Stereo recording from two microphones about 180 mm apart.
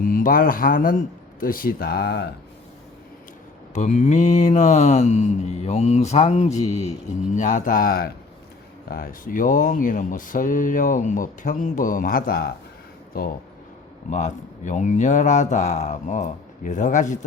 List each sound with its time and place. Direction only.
0.0 s speech: 50° left (ahead or behind)
3.8 s mantra: 40° left (ahead or behind)
7.3 s speech: 45° left (ahead or behind)
14.1 s speech: 40° left (ahead or behind)